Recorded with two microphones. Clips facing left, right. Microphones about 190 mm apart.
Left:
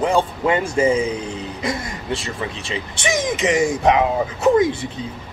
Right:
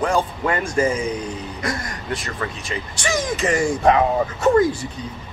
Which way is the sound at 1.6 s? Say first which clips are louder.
Left 2 dB; 25° left (ahead or behind).